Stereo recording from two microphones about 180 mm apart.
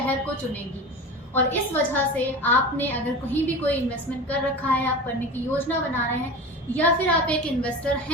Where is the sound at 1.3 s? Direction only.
10° left (ahead or behind).